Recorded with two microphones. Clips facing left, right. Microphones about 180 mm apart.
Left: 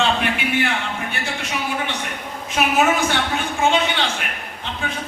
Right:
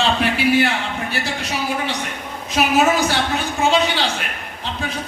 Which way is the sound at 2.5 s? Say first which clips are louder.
Right 2 dB; 35° right (ahead or behind).